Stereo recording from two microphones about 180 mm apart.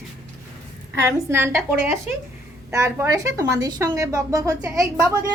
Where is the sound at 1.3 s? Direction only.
10° right (ahead or behind).